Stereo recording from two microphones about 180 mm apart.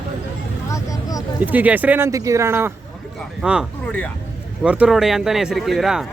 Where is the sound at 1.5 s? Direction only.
10° right (ahead or behind).